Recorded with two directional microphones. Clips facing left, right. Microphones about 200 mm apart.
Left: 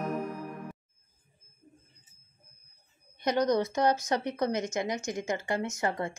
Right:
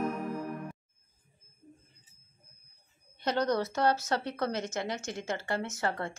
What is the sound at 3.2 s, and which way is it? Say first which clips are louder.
Speech: left 3 dB; 15° left (ahead or behind).